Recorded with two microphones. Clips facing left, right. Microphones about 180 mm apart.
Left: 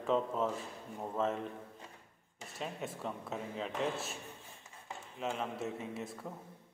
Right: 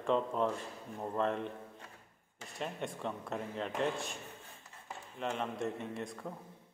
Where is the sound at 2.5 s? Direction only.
5° left (ahead or behind).